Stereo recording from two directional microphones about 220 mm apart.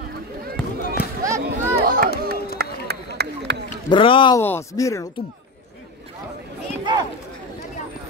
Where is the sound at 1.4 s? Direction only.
40° right (ahead or behind).